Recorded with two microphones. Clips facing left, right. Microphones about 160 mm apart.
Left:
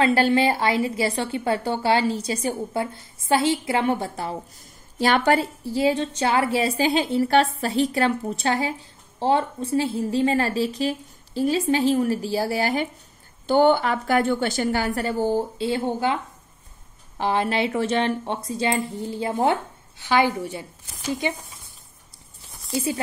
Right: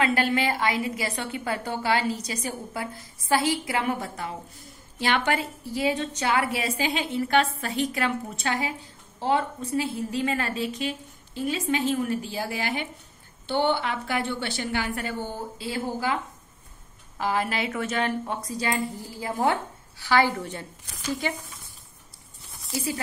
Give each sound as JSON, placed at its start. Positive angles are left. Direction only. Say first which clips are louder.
{"t": 0.0, "sound": "a woman's voice", "louder": "left 5 dB", "side_deg": 30}
{"t": 17.2, "sound": "a woman's voice", "louder": "left 4 dB", "side_deg": 30}
{"t": 22.7, "sound": "speech", "louder": "left 4 dB", "side_deg": 25}